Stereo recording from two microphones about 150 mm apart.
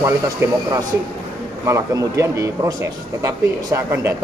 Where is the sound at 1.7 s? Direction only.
20° right (ahead or behind).